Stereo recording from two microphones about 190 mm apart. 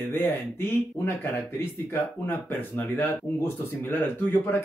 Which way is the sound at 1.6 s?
10° left (ahead or behind).